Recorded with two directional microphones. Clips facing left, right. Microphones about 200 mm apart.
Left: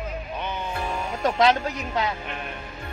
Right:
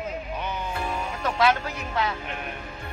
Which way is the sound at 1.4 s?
20° left (ahead or behind).